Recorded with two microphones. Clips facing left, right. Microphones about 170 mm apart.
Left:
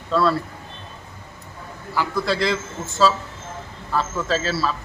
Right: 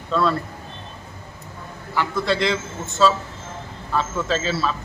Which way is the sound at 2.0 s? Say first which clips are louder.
Even; centre (ahead or behind).